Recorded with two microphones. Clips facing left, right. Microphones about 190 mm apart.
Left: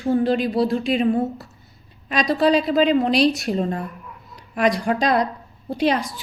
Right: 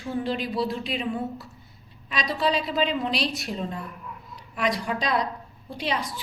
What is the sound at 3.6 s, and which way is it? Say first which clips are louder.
A woman's voice: left 8 dB; 55° left (ahead or behind).